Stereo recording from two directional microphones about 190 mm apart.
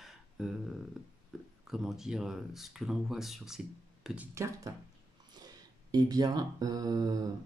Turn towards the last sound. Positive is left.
turn(degrees=-20)  # may be behind; listen again after turning